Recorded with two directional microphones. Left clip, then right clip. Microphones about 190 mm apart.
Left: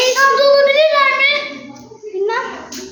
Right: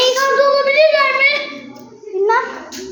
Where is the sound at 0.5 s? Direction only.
15° left (ahead or behind).